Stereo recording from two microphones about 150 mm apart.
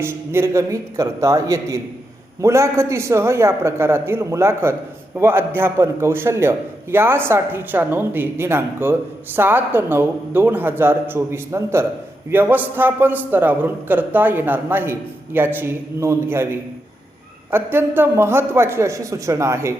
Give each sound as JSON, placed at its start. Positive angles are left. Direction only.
{"t": 0.0, "sound": "a man's voice", "side_deg": -15}